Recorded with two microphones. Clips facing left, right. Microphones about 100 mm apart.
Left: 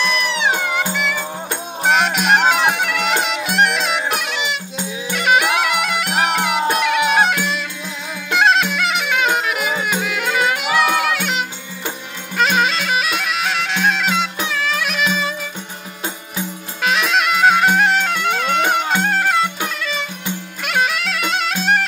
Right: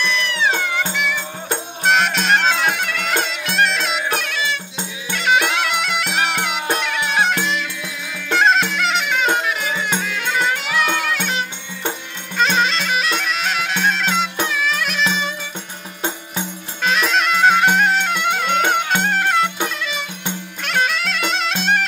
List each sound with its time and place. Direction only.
0.4 s music: 15° left (ahead or behind)
8.3 s clarinet: 5° left (ahead or behind)
12.4 s bagpipes: 5° left (ahead or behind)
14.5 s music: centre (ahead or behind)
16.8 s music: 5° left (ahead or behind)